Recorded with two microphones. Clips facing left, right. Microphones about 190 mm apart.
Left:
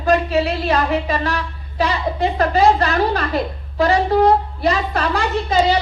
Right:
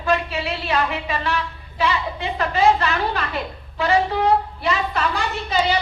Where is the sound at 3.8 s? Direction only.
40° left (ahead or behind).